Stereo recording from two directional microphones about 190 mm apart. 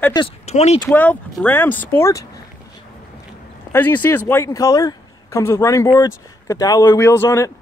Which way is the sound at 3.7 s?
10° left (ahead or behind).